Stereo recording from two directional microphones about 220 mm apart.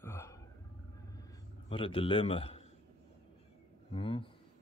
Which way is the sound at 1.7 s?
25° left (ahead or behind).